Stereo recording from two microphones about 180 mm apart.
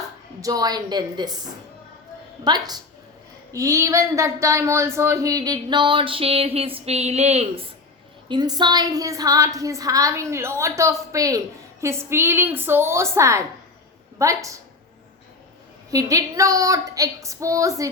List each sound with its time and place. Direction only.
0.4 s speech: 20° right (ahead or behind)
2.4 s a woman's voice: 25° right (ahead or behind)
8.3 s a woman's voice: 25° right (ahead or behind)
15.9 s speech: 20° right (ahead or behind)